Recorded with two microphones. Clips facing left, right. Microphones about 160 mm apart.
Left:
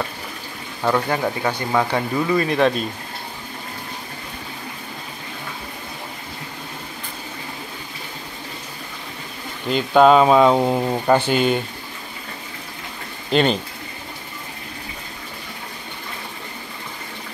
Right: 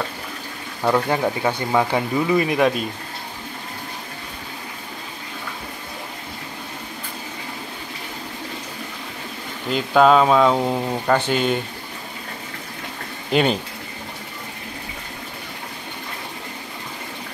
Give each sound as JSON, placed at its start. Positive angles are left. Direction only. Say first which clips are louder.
{"t": 0.8, "sound": "speech", "louder": "right 1 dB", "side_deg": -10}
{"t": 9.7, "sound": "speech", "louder": "left 2 dB", "side_deg": 0}
{"t": 13.3, "sound": "speech", "louder": "left 1 dB", "side_deg": -5}